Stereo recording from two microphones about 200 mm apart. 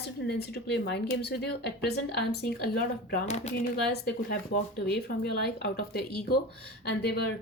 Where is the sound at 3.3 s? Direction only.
35° left (ahead or behind).